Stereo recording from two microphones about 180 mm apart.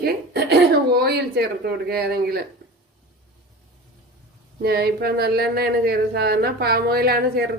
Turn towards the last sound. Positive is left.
turn(degrees=-60)  # may be behind; listen again after turning